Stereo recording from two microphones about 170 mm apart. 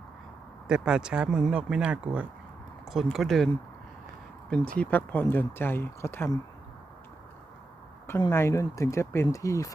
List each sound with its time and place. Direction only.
0.7 s speech: 5° right (ahead or behind); by 6.3 s 15° left (ahead or behind)
8.3 s speech: 15° left (ahead or behind)